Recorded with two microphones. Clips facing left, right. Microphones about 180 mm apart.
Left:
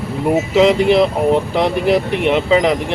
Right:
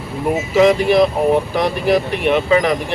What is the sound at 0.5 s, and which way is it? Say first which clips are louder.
Speech: even; 20° left (ahead or behind).